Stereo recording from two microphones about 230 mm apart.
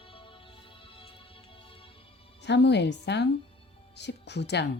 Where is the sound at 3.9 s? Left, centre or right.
Left.